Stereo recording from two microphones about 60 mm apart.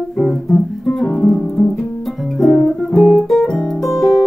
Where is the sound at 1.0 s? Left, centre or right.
Centre.